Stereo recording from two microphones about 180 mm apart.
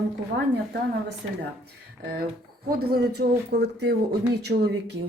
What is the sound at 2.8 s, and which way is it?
Speech, 60° right (ahead or behind).